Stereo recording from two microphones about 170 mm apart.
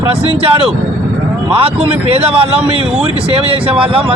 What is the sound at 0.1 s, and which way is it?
A man's voice, 35° right (ahead or behind).